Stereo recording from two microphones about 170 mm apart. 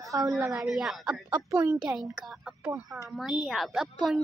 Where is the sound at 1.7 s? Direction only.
Centre (ahead or behind).